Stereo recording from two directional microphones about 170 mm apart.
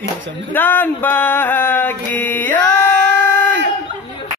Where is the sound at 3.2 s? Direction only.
10° left (ahead or behind).